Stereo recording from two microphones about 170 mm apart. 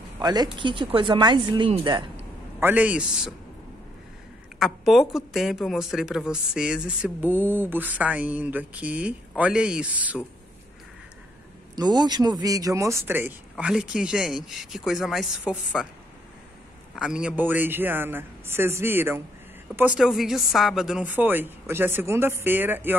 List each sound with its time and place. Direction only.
0.2 s speech: 25° right (ahead or behind)
2.6 s speech: 10° right (ahead or behind)
4.6 s a woman's voice: centre (ahead or behind)
11.7 s speech: 25° right (ahead or behind); by 15.6 s 5° right (ahead or behind)
16.9 s speech: 5° right (ahead or behind)